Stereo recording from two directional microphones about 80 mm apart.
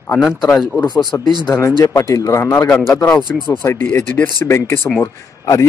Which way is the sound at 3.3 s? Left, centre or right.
Left.